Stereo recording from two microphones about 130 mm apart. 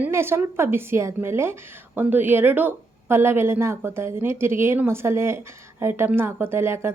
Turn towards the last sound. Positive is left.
turn(degrees=-20)  # may be behind; listen again after turning